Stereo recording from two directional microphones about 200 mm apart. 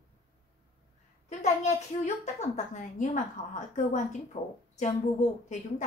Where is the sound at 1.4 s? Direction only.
35° left (ahead or behind).